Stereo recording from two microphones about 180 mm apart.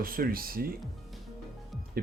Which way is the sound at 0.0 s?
55° right (ahead or behind).